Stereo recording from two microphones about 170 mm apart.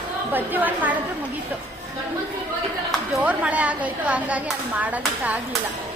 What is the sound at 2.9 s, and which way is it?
A woman's voice, 5° right (ahead or behind).